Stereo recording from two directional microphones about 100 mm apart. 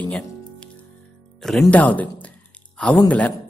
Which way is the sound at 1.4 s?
5° left (ahead or behind).